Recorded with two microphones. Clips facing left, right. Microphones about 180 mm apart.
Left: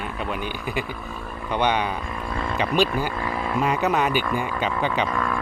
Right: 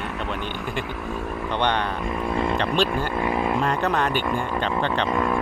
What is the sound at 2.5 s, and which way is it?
Speech, 5° left (ahead or behind).